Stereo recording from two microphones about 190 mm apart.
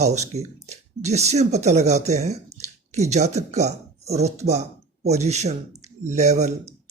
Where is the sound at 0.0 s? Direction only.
35° right (ahead or behind).